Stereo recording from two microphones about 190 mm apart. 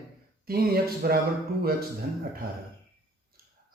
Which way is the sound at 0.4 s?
55° right (ahead or behind).